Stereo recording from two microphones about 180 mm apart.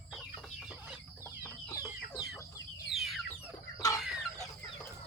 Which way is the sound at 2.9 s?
Centre (ahead or behind).